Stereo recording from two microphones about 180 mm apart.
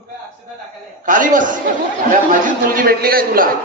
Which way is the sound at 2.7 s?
55° right (ahead or behind).